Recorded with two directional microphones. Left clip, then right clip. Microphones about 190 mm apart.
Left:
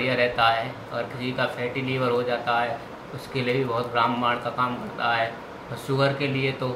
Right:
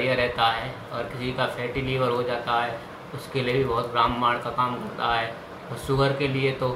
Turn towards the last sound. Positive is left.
turn(degrees=5)  # may be behind; listen again after turning